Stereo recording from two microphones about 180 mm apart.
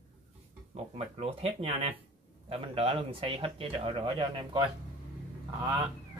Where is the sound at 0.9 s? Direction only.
35° right (ahead or behind).